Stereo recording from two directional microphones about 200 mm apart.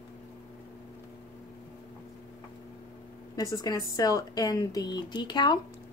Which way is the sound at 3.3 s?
15° left (ahead or behind).